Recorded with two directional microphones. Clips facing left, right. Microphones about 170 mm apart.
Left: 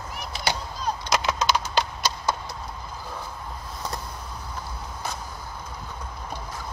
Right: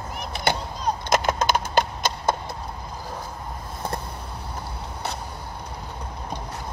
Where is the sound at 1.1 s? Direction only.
50° right (ahead or behind).